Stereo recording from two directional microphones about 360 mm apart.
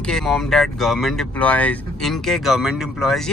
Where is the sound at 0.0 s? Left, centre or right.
Centre.